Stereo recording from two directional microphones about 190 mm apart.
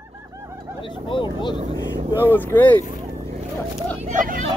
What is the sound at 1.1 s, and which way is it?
Vehicle, 25° left (ahead or behind).